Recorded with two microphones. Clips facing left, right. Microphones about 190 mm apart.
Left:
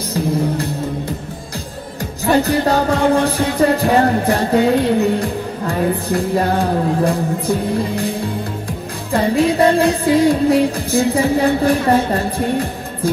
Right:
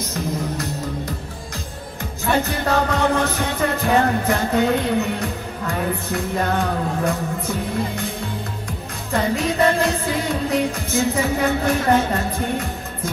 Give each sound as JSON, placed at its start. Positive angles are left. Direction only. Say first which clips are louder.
{"t": 0.1, "sound": "music", "louder": "left 9 dB", "side_deg": 30}